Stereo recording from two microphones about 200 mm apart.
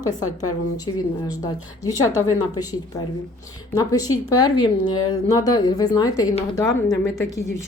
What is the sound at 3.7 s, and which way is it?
A woman's voice, 15° left (ahead or behind).